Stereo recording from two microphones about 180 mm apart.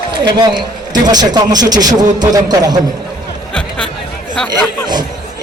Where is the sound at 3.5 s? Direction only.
5° left (ahead or behind).